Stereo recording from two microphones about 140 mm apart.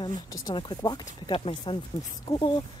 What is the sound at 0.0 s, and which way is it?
Speech, 30° left (ahead or behind).